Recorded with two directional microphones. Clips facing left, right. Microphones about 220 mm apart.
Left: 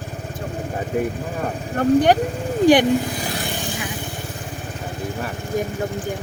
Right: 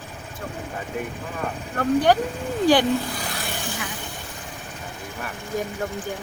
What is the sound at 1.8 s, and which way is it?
Speech, 20° left (ahead or behind).